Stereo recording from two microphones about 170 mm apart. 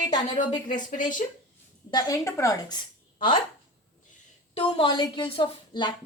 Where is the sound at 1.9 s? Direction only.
20° left (ahead or behind).